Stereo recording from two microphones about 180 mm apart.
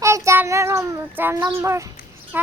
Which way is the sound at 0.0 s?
15° right (ahead or behind).